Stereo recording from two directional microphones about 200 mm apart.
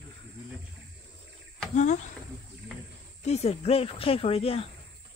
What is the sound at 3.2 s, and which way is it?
Speech, 35° left (ahead or behind).